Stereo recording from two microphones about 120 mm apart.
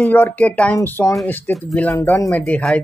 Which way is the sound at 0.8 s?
20° left (ahead or behind).